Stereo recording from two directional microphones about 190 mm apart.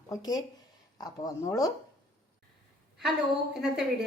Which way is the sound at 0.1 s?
20° left (ahead or behind).